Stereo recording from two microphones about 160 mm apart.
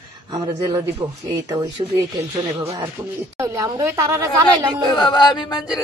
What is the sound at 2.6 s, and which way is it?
Speech, 40° right (ahead or behind).